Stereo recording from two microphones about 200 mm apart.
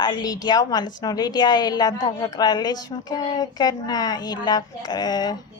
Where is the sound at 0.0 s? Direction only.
20° left (ahead or behind).